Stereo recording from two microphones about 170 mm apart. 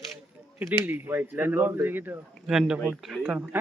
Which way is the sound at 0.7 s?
10° right (ahead or behind).